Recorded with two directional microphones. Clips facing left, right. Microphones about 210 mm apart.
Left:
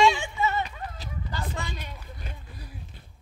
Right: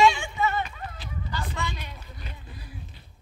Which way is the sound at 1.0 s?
35° left (ahead or behind).